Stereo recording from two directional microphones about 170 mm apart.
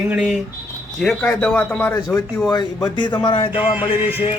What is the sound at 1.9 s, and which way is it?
Speech, 20° left (ahead or behind).